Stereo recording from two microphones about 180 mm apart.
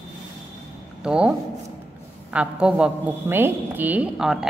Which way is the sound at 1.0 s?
5° right (ahead or behind).